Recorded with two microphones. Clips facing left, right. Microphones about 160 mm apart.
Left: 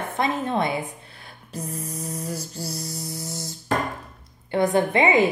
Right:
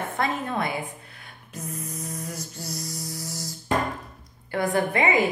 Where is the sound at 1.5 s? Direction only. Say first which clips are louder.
Left 3 dB; 35° left (ahead or behind).